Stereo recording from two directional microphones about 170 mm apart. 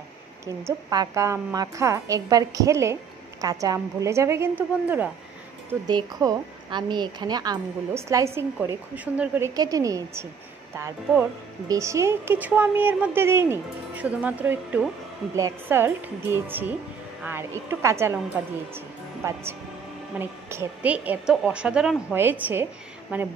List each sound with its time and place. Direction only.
0.8 s a woman's voice: 20° right (ahead or behind)
5.9 s a woman's voice: 25° right (ahead or behind)
9.6 s a woman's voice: 20° right (ahead or behind)
20.2 s a woman's voice: 15° right (ahead or behind)